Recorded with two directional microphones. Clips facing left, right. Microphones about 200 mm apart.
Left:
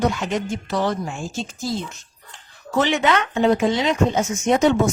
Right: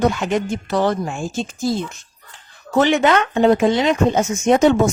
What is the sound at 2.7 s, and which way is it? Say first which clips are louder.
Speech: right 4 dB; 50° right (ahead or behind).